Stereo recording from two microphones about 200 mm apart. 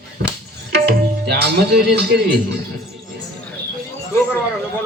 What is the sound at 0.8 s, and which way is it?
Tabla, 55° right (ahead or behind).